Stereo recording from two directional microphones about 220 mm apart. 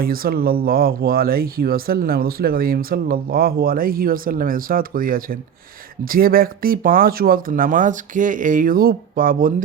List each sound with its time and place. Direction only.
0.0 s speech: 40° right (ahead or behind)